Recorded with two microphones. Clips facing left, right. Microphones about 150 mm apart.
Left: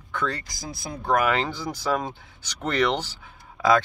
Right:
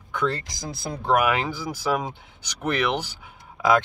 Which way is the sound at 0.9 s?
30° right (ahead or behind).